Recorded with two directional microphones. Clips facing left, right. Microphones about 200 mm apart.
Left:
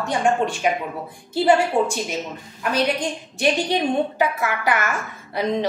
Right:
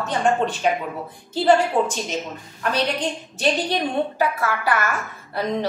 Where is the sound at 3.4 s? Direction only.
15° left (ahead or behind).